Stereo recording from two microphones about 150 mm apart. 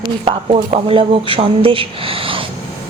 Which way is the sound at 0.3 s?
40° right (ahead or behind).